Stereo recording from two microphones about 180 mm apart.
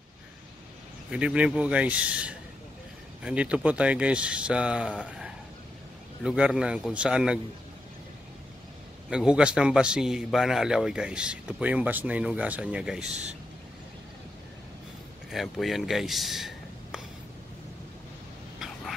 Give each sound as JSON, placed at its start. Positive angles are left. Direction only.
{"t": 1.1, "sound": "a man's voice", "side_deg": -5}
{"t": 5.0, "sound": "a sound", "side_deg": -5}
{"t": 6.2, "sound": "a man's voice", "side_deg": -5}
{"t": 9.1, "sound": "a man's voice", "side_deg": -5}
{"t": 13.0, "sound": "speech", "side_deg": -40}
{"t": 15.3, "sound": "speech", "side_deg": 0}